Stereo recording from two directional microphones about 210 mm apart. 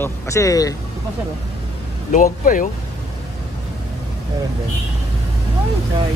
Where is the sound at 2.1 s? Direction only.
40° left (ahead or behind).